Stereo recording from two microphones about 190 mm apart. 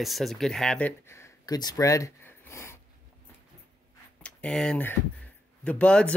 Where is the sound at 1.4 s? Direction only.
20° left (ahead or behind).